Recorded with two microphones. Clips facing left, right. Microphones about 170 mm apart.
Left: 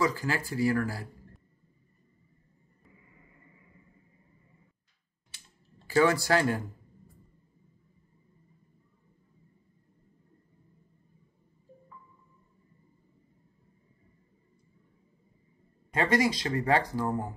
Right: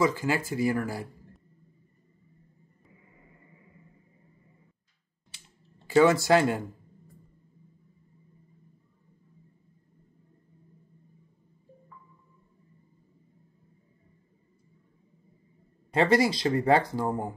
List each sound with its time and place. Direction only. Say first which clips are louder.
0.0 s speech: right 3 dB; 20° right (ahead or behind)
5.9 s speech: right 4 dB; 20° right (ahead or behind)
15.9 s speech: right 3 dB; 30° right (ahead or behind)